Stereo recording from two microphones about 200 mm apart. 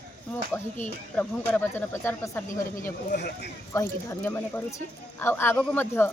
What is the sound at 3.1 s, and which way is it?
Speech, 55° left (ahead or behind).